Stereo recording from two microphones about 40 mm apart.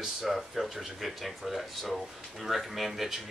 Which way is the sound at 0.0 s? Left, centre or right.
Centre.